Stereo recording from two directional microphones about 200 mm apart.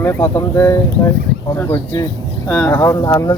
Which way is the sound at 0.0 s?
15° left (ahead or behind).